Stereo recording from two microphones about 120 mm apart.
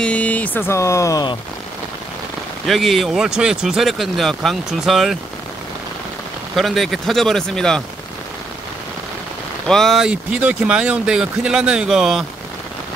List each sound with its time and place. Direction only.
0.0 s speech: 10° left (ahead or behind); by 1.3 s 30° left (ahead or behind)
2.6 s speech: centre (ahead or behind)
6.5 s speech: centre (ahead or behind)
9.7 s speech: centre (ahead or behind)